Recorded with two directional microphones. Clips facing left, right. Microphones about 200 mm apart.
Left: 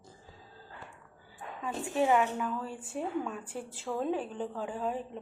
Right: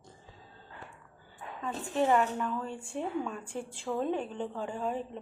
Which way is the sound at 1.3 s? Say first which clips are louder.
Even; 5° left (ahead or behind).